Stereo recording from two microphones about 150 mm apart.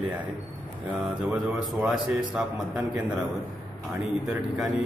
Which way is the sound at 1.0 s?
Centre (ahead or behind).